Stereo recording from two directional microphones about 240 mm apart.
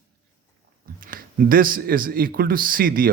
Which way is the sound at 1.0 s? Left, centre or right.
Right.